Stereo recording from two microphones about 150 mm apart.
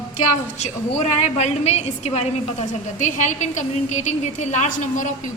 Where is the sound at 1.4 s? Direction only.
50° left (ahead or behind).